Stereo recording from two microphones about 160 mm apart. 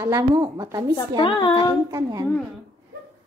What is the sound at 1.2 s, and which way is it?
Speech, 30° left (ahead or behind).